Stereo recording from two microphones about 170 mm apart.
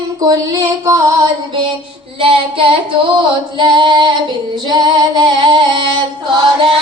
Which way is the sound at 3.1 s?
30° right (ahead or behind).